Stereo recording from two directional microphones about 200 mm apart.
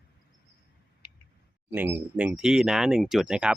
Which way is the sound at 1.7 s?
10° right (ahead or behind).